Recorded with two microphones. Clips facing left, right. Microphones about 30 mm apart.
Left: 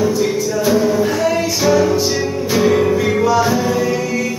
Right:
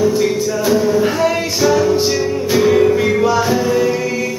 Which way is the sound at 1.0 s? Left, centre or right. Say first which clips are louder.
Right 1 dB; centre.